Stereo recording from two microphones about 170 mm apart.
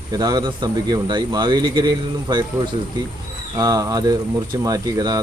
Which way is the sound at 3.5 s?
20° right (ahead or behind).